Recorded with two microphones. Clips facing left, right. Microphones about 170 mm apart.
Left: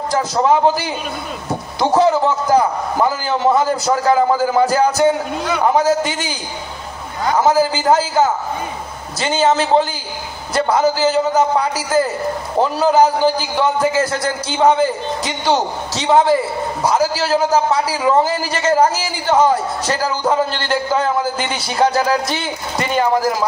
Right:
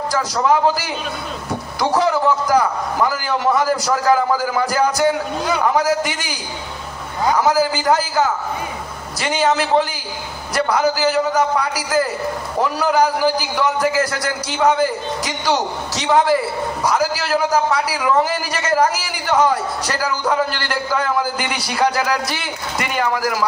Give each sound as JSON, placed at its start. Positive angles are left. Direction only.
{"t": 0.1, "sound": "a man's voice", "side_deg": 25}